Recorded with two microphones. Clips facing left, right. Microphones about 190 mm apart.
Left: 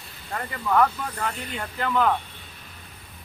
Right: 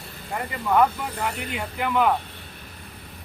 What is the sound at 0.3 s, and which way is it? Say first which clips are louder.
Speech: right 1 dB; 15° right (ahead or behind).